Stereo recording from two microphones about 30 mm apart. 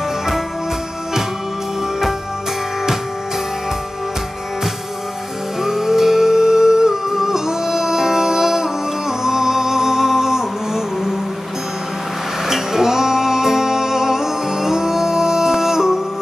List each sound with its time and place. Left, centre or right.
5.6 s music: centre
12.4 s music: centre